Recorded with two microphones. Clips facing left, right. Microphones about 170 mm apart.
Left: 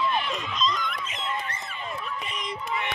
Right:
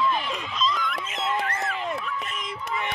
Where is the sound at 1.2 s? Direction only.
90° right.